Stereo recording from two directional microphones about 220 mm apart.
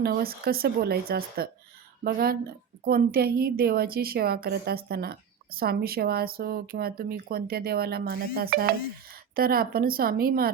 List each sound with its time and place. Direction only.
0.0 s a woman's voice: 45° right (ahead or behind)